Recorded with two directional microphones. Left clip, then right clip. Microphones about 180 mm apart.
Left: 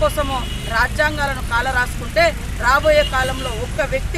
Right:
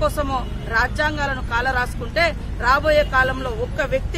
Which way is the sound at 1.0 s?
25° right (ahead or behind).